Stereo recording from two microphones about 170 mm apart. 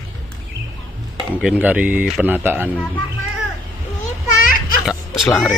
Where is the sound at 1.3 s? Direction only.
10° right (ahead or behind).